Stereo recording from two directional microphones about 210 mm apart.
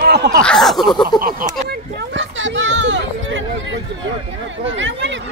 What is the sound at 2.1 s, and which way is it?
Children playing, 65° right (ahead or behind).